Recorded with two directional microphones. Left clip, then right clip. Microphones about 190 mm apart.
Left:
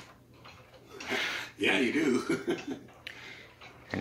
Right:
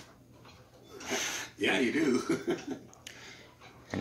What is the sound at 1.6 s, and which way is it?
Speech, centre (ahead or behind).